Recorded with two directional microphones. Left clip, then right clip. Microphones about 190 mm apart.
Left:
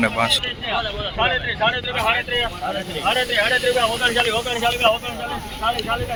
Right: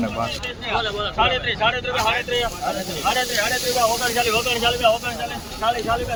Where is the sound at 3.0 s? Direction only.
55° right (ahead or behind).